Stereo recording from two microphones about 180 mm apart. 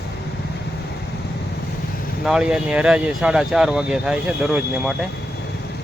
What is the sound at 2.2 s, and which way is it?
Speech, 5° right (ahead or behind).